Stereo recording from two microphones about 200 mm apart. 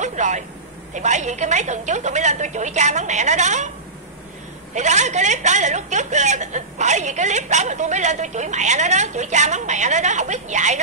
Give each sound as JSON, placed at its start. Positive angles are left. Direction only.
{"t": 0.0, "sound": "a woman's voice", "side_deg": -35}
{"t": 4.7, "sound": "a woman's voice", "side_deg": -35}